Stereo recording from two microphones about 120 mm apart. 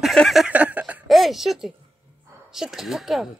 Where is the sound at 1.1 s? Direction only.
Centre (ahead or behind).